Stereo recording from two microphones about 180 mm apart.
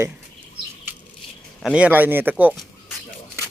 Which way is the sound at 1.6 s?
5° right (ahead or behind).